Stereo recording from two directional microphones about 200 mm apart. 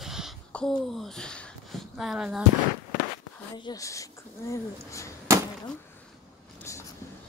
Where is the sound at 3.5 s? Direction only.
20° left (ahead or behind).